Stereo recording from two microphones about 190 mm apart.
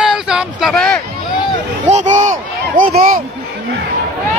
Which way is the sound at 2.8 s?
40° right (ahead or behind).